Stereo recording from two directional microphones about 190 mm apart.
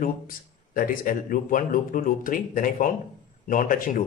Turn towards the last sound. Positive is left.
turn(degrees=45)  # may be behind; listen again after turning